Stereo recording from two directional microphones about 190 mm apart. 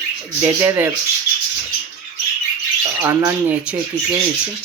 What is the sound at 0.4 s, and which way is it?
Speech, 15° right (ahead or behind).